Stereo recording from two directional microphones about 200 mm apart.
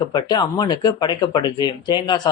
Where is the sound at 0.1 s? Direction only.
20° left (ahead or behind).